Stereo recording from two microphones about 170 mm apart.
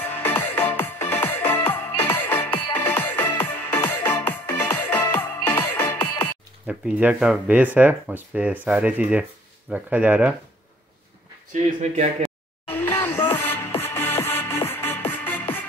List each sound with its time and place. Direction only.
0.1 s music: 10° left (ahead or behind)
6.7 s speech: 5° right (ahead or behind)
11.5 s speech: 40° right (ahead or behind)
12.6 s music: 10° left (ahead or behind)